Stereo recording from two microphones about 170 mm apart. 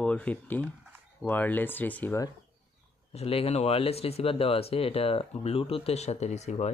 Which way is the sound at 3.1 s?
35° left (ahead or behind).